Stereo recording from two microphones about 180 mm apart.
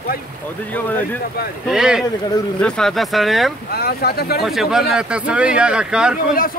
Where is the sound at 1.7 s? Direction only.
5° right (ahead or behind).